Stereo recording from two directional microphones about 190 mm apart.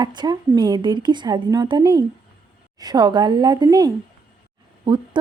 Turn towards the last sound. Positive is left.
turn(degrees=-25)  # may be behind; listen again after turning